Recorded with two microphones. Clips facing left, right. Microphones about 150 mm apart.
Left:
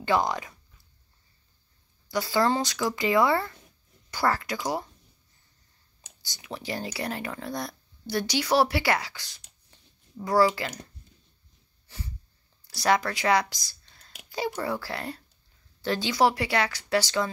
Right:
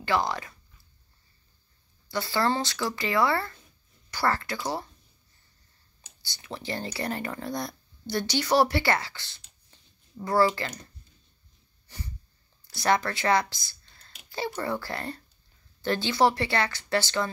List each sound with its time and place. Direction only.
0.0 s speech: 20° left (ahead or behind)
2.0 s speech: 15° left (ahead or behind)
6.2 s speech: 15° left (ahead or behind)
12.8 s speech: 10° left (ahead or behind)